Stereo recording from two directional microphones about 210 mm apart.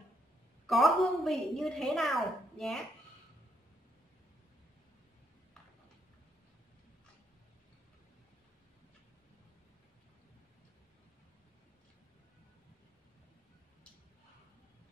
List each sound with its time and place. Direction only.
0.7 s a woman's voice: centre (ahead or behind)